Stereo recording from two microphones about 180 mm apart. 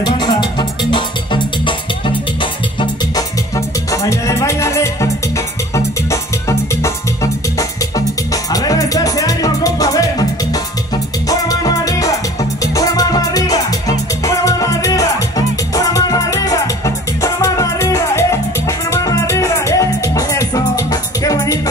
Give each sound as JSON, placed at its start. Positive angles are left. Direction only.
{"t": 0.0, "sound": "music", "side_deg": 25}
{"t": 2.8, "sound": "music", "side_deg": 20}
{"t": 8.5, "sound": "music", "side_deg": 20}